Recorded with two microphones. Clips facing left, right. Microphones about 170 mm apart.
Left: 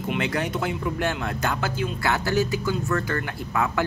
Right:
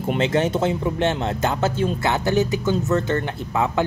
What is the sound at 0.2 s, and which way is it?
Speech, 25° right (ahead or behind).